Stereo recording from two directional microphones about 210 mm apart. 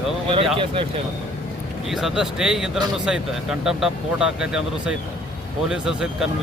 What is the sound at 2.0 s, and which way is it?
Speech, centre (ahead or behind).